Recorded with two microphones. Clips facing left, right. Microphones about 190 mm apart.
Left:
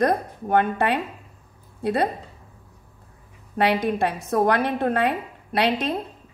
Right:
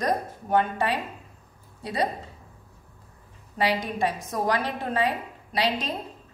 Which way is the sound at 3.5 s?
60° left (ahead or behind).